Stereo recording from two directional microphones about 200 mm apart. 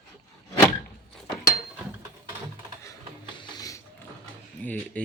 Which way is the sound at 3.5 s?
15° left (ahead or behind).